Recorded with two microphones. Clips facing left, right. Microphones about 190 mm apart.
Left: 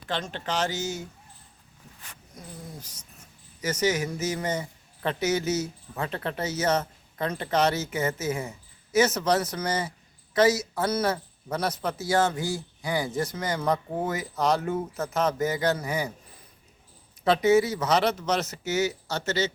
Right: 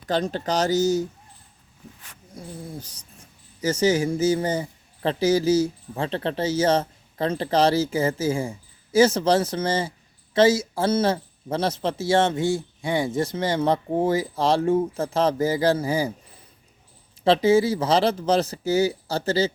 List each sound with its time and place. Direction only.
0.1 s speech: 40° right (ahead or behind)
3.6 s speech: 30° right (ahead or behind)
17.2 s speech: 30° right (ahead or behind)